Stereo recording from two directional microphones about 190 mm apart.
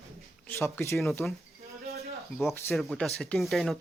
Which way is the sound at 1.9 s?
35° right (ahead or behind).